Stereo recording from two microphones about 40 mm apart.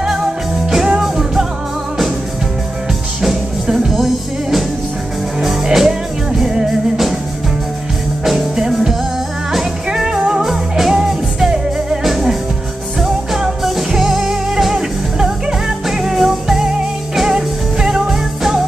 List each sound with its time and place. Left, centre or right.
0.8 s music: centre
3.2 s music: centre
8.2 s music: centre
10.4 s music: centre